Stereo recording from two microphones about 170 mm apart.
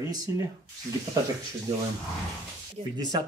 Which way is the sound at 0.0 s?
20° right (ahead or behind).